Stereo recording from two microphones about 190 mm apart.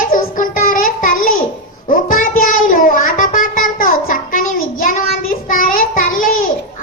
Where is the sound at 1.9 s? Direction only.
45° left (ahead or behind).